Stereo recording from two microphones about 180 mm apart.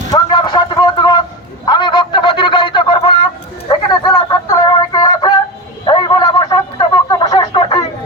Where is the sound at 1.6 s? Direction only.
25° left (ahead or behind).